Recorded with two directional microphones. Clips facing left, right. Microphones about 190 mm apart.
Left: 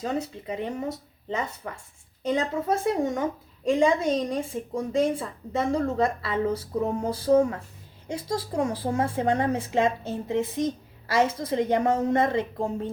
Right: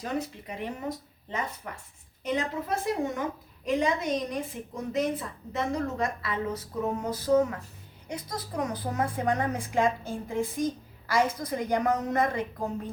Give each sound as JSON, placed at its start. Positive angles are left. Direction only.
{"t": 0.0, "sound": "a woman's voice", "side_deg": 25}